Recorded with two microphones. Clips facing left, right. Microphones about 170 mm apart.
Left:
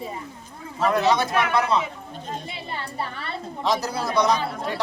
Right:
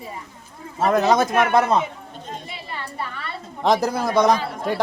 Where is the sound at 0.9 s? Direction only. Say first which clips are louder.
Right 3 dB; 45° right (ahead or behind).